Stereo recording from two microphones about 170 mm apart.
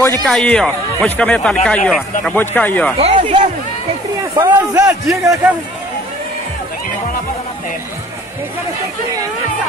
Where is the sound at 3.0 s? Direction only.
35° right (ahead or behind).